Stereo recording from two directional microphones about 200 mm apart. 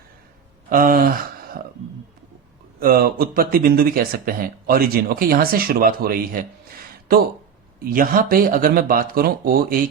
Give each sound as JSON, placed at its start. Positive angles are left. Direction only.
{"t": 0.7, "sound": "speech", "side_deg": -45}
{"t": 2.8, "sound": "speech", "side_deg": -50}
{"t": 7.9, "sound": "speech", "side_deg": -45}